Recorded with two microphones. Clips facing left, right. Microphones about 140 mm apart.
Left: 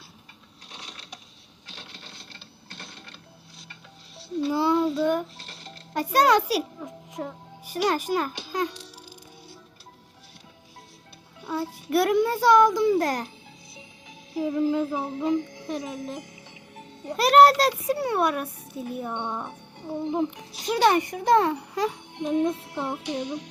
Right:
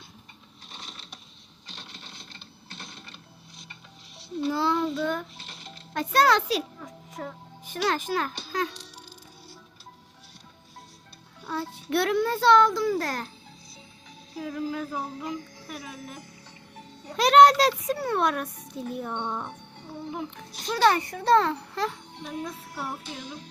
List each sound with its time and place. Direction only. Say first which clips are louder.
4.5 s child singing: left 5 dB; 10° left (ahead or behind)
5.9 s a child's voice: left 2 dB; 10° left (ahead or behind)
7.1 s music: left 2 dB; 5° left (ahead or behind)
11.3 s a child's voice: left 3 dB; 5° left (ahead or behind)
14.3 s music: left 8 dB; 20° left (ahead or behind)
17.2 s a child's voice: even; 5° left (ahead or behind)
22.4 s music: left 7 dB; 20° left (ahead or behind)
23.0 s music: left 9 dB; 65° left (ahead or behind)